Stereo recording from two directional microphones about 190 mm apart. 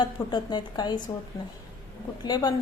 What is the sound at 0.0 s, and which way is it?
A woman's voice, 25° left (ahead or behind).